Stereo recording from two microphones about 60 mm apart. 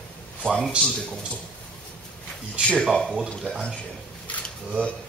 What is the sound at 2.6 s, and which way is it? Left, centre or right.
Speech, centre.